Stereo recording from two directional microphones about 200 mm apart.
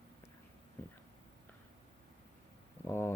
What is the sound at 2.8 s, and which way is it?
Speech, 10° left (ahead or behind).